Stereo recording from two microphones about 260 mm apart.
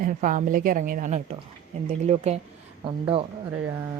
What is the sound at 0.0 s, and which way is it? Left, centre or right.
A woman's voice, right.